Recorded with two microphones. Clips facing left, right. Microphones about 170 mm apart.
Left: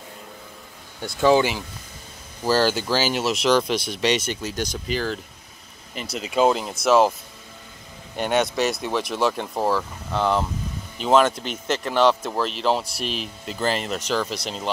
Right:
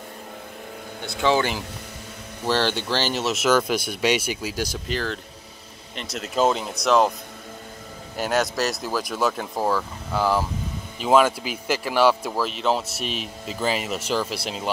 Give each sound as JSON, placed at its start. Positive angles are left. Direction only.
{"t": 2.4, "sound": "speech", "side_deg": 5}
{"t": 8.2, "sound": "speech", "side_deg": 0}